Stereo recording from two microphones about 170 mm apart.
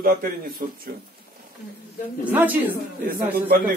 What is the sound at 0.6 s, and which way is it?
Speech, 60° right (ahead or behind).